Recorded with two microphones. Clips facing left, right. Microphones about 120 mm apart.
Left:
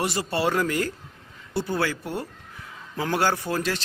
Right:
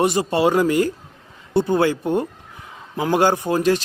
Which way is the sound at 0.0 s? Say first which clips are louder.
Right 7 dB; 20° right (ahead or behind).